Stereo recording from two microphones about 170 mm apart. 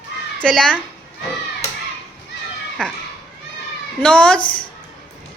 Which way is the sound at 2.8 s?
5° left (ahead or behind).